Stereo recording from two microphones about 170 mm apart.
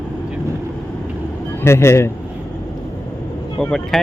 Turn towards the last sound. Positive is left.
turn(degrees=5)  # may be behind; listen again after turning